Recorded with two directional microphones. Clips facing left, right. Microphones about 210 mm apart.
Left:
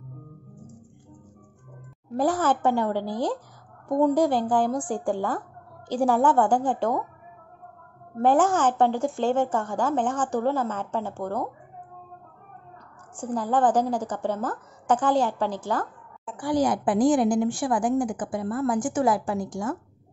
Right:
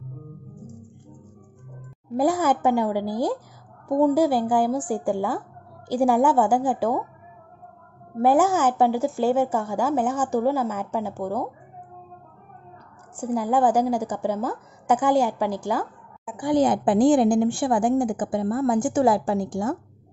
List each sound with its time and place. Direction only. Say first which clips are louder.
2.1 s speech: right 2 dB; 10° right (ahead or behind)
8.2 s speech: right 2 dB; 10° right (ahead or behind)
13.2 s speech: right 2 dB; 10° right (ahead or behind)
16.4 s a woman's voice: right 3 dB; 25° right (ahead or behind)